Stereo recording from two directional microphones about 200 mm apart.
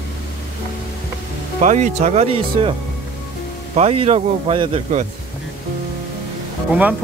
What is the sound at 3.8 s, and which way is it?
Speech, 30° right (ahead or behind).